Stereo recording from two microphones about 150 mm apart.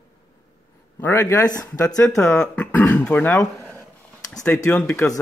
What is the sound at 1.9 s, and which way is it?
Speech, 5° left (ahead or behind).